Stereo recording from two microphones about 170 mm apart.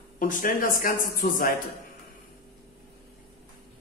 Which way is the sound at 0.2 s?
50° left (ahead or behind).